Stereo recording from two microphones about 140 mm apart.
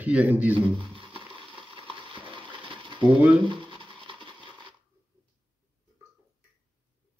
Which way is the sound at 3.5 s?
35° right (ahead or behind).